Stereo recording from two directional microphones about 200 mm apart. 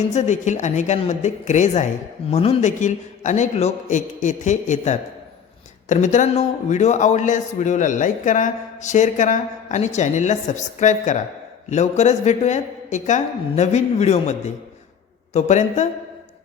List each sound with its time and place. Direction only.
0.1 s a man's voice: 35° left (ahead or behind)